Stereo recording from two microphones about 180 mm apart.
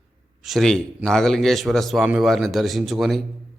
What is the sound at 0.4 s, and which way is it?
A man's voice, centre (ahead or behind).